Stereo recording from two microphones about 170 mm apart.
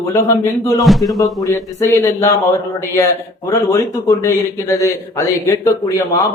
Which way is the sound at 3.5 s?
20° left (ahead or behind).